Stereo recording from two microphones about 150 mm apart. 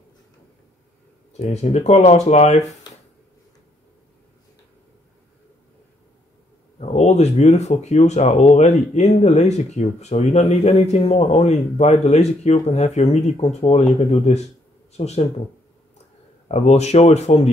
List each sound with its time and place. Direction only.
1.3 s speech: 50° left (ahead or behind)
6.8 s speech: 45° left (ahead or behind)
16.4 s speech: 45° left (ahead or behind)